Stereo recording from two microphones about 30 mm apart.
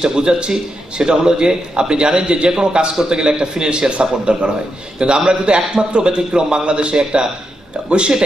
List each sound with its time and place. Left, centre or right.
0.0 s a man's voice: right